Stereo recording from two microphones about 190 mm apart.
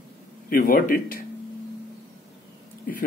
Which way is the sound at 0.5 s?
50° left (ahead or behind).